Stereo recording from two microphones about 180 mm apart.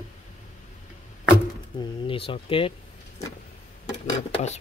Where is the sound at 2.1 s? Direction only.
30° left (ahead or behind).